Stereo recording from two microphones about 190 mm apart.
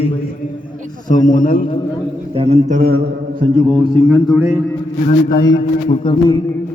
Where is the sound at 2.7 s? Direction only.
55° right (ahead or behind).